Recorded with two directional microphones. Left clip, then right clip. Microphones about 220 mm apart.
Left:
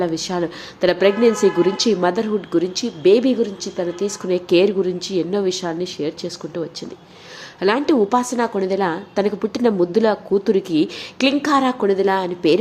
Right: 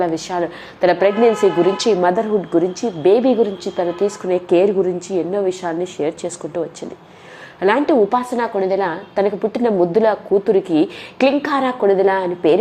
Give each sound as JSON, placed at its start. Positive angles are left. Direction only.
{"t": 0.0, "sound": "a woman's voice", "side_deg": 15}